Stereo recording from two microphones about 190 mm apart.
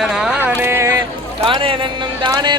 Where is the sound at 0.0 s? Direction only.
Centre (ahead or behind).